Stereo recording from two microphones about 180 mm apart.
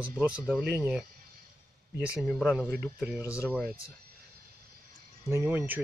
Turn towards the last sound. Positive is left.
turn(degrees=-10)  # may be behind; listen again after turning